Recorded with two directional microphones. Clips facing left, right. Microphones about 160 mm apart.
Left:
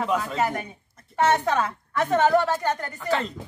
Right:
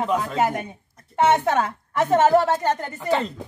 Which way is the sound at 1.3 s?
25° right (ahead or behind).